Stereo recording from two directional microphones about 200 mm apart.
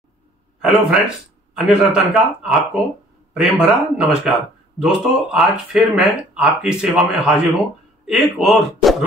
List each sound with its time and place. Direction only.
0.6 s speech: 5° right (ahead or behind)